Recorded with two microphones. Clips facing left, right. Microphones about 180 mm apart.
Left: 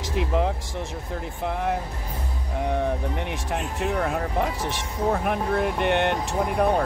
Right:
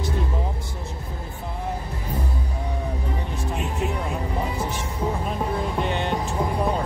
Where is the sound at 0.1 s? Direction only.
80° left.